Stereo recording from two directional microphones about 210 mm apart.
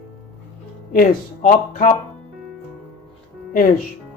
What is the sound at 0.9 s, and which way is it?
Speech, 40° left (ahead or behind).